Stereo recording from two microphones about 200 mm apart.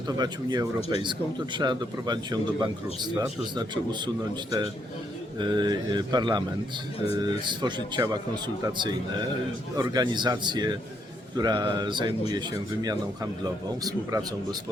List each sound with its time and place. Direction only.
0.2 s speech: 20° right (ahead or behind)
5.4 s speech: 20° right (ahead or behind)